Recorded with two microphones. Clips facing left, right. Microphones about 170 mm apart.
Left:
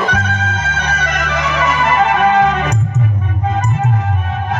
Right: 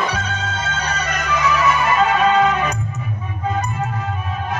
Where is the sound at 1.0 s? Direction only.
90° left.